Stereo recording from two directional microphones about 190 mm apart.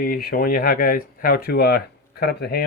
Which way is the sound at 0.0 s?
50° left (ahead or behind).